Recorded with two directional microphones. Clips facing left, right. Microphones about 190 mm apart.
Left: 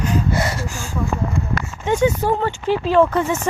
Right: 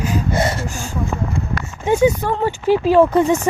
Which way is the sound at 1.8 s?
10° right (ahead or behind).